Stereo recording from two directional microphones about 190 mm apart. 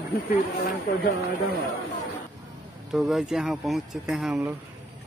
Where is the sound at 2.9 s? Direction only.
Centre (ahead or behind).